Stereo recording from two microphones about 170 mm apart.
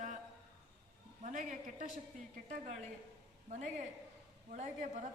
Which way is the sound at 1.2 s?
50° right (ahead or behind).